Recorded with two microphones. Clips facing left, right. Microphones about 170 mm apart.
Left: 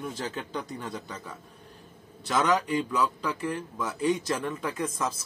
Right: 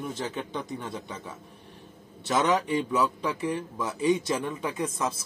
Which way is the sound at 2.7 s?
25° right (ahead or behind).